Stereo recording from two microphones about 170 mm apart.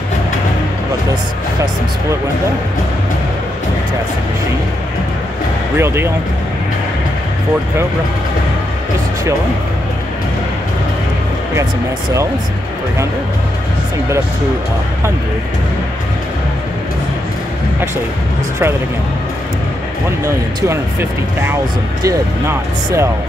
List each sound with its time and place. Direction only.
5.8 s speech: 15° right (ahead or behind)
20.2 s speech: 15° right (ahead or behind)